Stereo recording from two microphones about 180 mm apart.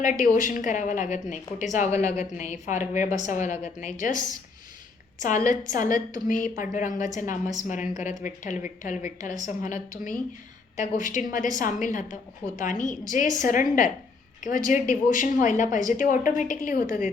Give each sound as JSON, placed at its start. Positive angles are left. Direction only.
{"t": 0.0, "sound": "a woman's voice", "side_deg": 45}